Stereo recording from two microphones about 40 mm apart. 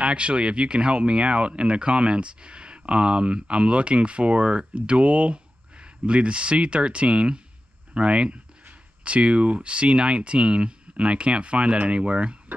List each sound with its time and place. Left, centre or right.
0.0 s speech: right